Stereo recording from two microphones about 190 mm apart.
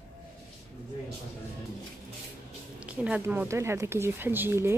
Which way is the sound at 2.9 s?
5° right (ahead or behind).